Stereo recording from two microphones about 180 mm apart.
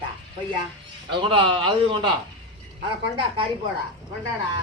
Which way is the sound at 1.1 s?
25° right (ahead or behind).